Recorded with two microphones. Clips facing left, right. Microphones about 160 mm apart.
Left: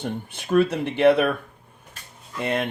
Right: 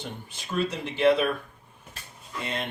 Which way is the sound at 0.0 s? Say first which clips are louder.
Left 8 dB; 55° left (ahead or behind).